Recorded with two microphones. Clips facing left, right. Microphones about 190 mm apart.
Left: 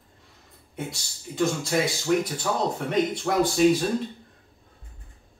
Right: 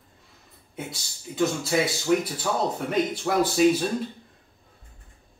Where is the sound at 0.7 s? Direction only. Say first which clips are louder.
Left 2 dB; centre (ahead or behind).